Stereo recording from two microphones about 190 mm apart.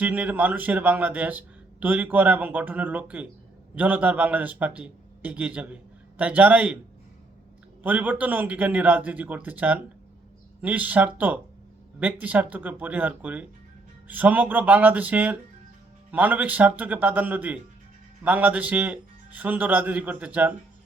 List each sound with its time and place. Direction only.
0.0 s a man's voice: 10° right (ahead or behind)
7.8 s a man's voice: 10° right (ahead or behind)